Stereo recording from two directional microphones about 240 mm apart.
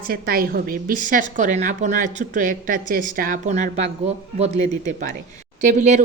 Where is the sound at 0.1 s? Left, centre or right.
Right.